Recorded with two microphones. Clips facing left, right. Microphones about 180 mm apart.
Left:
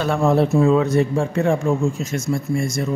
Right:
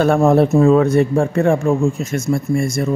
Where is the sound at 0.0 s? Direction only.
50° right (ahead or behind).